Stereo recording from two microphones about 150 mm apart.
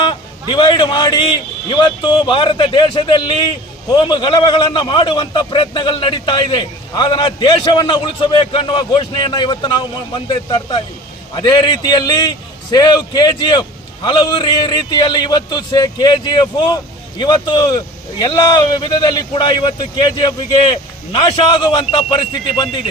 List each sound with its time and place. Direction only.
0.5 s a man's voice: 30° left (ahead or behind)